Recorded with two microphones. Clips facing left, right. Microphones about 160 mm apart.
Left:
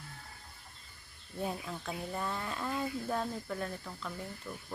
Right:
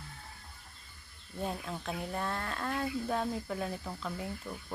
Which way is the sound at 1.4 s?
Centre (ahead or behind).